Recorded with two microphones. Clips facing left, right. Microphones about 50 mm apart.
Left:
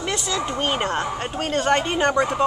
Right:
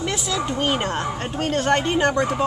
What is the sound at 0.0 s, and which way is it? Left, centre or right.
Speech, centre.